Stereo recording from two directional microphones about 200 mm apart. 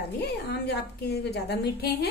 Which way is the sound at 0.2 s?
55° left (ahead or behind).